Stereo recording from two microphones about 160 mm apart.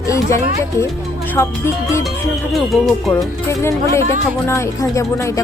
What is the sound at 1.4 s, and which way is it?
Speech, 15° left (ahead or behind).